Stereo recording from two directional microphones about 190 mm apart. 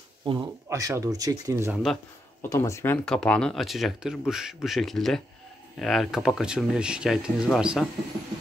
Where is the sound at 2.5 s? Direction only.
15° left (ahead or behind); by 7.9 s centre (ahead or behind).